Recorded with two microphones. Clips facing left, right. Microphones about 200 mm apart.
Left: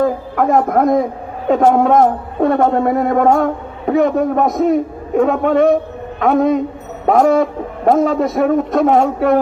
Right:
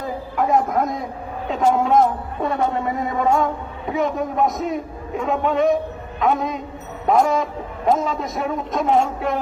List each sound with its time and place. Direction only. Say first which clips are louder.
0.0 s a man's voice: left 8 dB; 55° left (ahead or behind)